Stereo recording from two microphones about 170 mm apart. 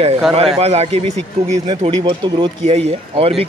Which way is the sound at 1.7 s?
30° right (ahead or behind).